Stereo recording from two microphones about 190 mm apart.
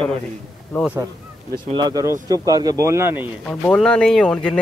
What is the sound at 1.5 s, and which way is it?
Speech, 20° right (ahead or behind).